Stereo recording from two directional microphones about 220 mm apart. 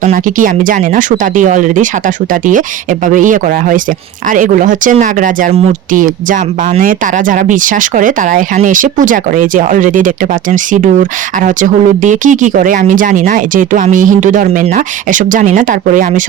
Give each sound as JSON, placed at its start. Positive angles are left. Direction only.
{"t": 0.0, "sound": "speech", "side_deg": -40}